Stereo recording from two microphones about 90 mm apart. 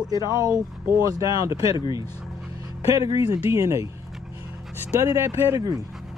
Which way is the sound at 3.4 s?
35° right (ahead or behind).